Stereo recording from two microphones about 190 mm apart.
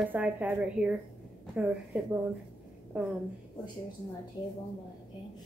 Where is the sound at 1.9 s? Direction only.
10° right (ahead or behind).